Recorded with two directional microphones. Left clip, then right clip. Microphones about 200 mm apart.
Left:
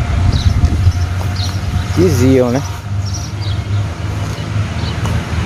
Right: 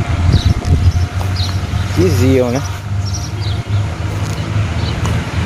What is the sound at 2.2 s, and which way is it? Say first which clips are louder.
Speech: left 2 dB; 25° left (ahead or behind).